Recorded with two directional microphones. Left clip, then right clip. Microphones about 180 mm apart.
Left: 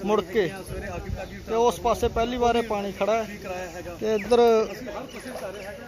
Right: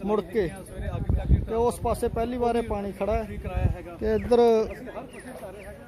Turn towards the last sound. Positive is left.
turn(degrees=-20)  # may be behind; listen again after turning